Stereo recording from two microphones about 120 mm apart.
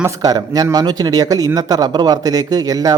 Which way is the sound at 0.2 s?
30° right (ahead or behind).